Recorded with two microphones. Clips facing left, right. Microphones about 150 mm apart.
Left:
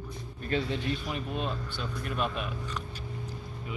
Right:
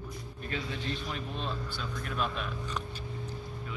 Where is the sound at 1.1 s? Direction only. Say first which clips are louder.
Left 3 dB; 10° left (ahead or behind).